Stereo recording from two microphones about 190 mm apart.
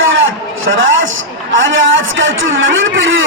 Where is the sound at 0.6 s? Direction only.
90° right.